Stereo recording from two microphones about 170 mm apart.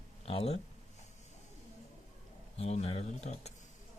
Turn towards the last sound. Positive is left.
turn(degrees=40)  # may be behind; listen again after turning